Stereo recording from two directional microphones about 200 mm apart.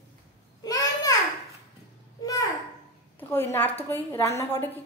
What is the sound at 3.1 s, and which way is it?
A woman's voice, 10° left (ahead or behind).